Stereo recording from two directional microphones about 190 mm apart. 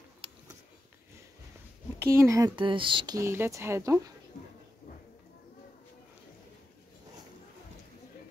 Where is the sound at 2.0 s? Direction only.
15° right (ahead or behind).